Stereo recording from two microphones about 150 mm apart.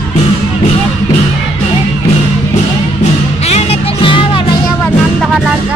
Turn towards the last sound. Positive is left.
turn(degrees=35)  # may be behind; listen again after turning